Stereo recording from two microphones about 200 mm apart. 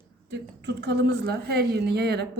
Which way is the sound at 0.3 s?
60° right (ahead or behind).